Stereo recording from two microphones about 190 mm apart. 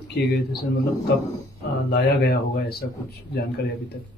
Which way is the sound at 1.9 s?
55° left (ahead or behind).